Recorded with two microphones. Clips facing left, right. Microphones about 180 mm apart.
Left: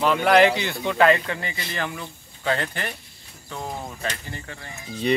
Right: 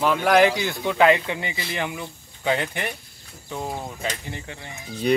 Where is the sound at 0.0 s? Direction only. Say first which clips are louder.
Left 1 dB; 5° right (ahead or behind).